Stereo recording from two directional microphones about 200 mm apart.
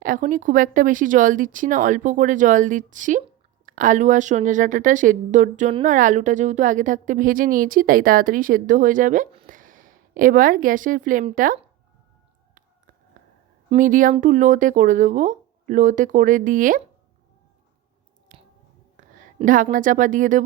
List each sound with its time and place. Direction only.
0.0 s a woman's voice: 40° right (ahead or behind)
13.7 s a woman's voice: 40° right (ahead or behind)
18.3 s finger snapping: 40° right (ahead or behind)
18.9 s speech: 40° right (ahead or behind)